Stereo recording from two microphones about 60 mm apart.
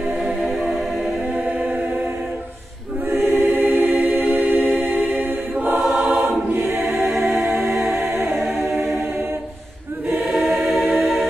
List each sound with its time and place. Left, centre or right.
0.2 s music: centre
1.3 s choir: right
3.1 s choir: right
5.1 s music: right
5.9 s choir: right
7.7 s a capella: centre
8.0 s a capella: right
8.7 s choir: centre
10.2 s choir: centre
10.6 s music: centre